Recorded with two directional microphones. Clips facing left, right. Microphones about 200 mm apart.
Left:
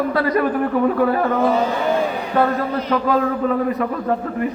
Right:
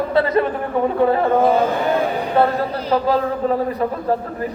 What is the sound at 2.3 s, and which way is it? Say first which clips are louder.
A man's voice: right 1 dB; 30° right (ahead or behind).